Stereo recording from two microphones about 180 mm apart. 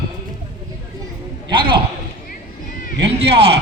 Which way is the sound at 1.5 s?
25° right (ahead or behind).